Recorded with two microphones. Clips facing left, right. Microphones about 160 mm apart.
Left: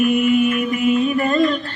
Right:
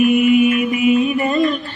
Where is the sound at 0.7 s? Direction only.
10° right (ahead or behind).